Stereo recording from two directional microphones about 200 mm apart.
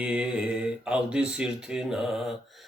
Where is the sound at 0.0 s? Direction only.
5° right (ahead or behind).